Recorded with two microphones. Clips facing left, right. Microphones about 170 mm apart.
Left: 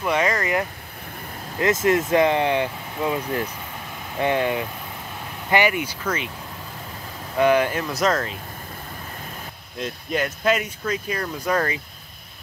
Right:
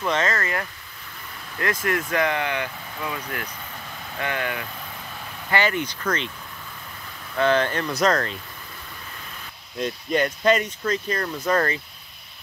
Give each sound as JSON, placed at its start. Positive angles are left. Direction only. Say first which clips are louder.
{"t": 0.0, "sound": "speech", "louder": "left 2 dB", "side_deg": 10}
{"t": 7.3, "sound": "speech", "louder": "left 2 dB", "side_deg": 10}
{"t": 9.8, "sound": "speech", "louder": "right 2 dB", "side_deg": 0}